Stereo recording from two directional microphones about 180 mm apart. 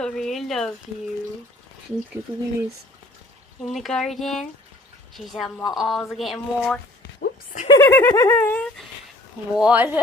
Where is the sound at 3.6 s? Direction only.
Centre (ahead or behind).